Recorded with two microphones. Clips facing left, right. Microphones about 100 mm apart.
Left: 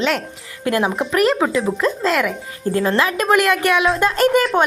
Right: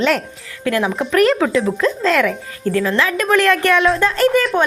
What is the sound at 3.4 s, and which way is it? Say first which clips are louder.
Speech: right 2 dB; 5° left (ahead or behind).